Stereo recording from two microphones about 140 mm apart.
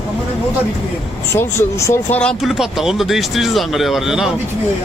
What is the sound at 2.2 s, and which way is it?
Speech, 5° left (ahead or behind).